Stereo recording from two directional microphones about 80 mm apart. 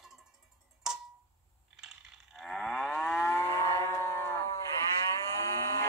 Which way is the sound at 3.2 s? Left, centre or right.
Left.